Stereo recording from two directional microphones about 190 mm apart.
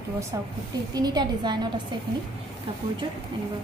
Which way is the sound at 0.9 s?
20° right (ahead or behind).